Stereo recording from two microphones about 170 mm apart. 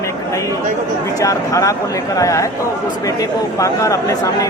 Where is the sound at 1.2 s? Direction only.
20° left (ahead or behind).